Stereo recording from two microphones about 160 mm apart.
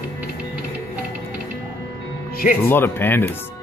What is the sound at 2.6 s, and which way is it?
Speech, 15° left (ahead or behind).